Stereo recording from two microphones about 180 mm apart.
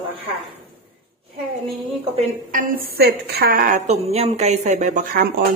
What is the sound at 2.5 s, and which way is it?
A woman's voice, 50° right (ahead or behind).